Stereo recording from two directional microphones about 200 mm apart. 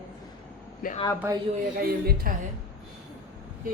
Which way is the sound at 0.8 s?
45° left (ahead or behind).